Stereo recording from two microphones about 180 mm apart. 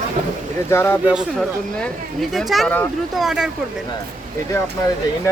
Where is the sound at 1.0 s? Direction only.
5° right (ahead or behind).